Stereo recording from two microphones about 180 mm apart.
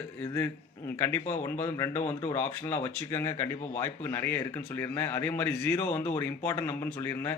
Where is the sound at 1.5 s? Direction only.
15° left (ahead or behind).